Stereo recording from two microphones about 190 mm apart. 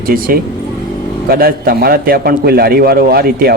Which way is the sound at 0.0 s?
50° right (ahead or behind).